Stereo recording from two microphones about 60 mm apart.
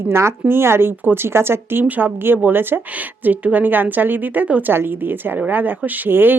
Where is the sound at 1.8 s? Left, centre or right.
Right.